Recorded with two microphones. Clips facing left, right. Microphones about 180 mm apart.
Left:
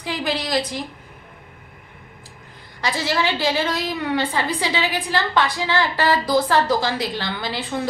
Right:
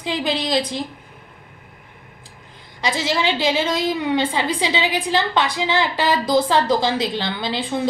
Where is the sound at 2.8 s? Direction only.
20° right (ahead or behind).